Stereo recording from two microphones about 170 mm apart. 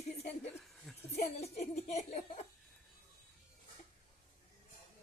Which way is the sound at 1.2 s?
40° left (ahead or behind).